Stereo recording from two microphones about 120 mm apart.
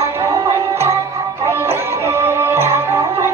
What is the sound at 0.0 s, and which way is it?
Music, 25° right (ahead or behind).